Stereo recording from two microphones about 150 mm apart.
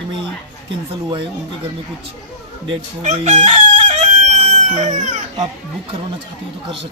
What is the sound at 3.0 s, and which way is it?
Chicken, 50° right (ahead or behind).